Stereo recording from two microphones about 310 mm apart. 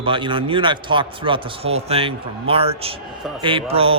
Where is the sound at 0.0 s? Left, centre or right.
Centre.